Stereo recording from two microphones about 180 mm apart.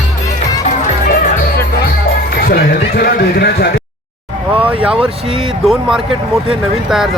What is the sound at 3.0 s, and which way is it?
Run, 65° left (ahead or behind).